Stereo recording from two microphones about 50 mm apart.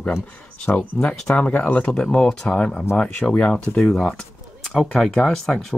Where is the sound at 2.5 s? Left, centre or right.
Centre.